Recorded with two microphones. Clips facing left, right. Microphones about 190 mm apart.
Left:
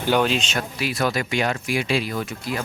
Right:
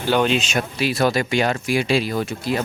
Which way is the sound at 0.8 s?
30° right (ahead or behind).